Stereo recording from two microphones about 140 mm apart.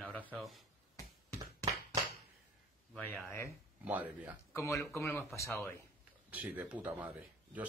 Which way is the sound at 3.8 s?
10° right (ahead or behind).